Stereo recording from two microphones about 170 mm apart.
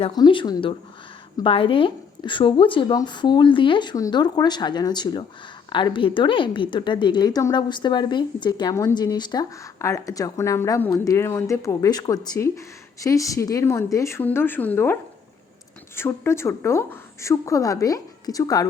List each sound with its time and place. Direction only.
0.0 s a woman's voice: 25° left (ahead or behind); by 14.9 s 10° left (ahead or behind)
16.0 s a woman's voice: 15° left (ahead or behind)